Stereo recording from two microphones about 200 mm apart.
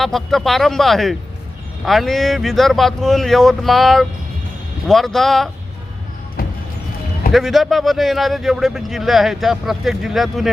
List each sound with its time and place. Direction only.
0.0 s speech: centre (ahead or behind)
7.3 s speech: centre (ahead or behind)